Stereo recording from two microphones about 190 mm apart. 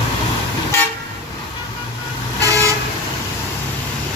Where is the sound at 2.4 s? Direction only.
15° right (ahead or behind).